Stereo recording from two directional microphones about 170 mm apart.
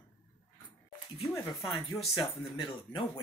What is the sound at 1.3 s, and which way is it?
Speech, 20° left (ahead or behind).